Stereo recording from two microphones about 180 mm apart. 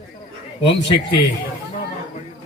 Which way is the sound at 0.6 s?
80° left.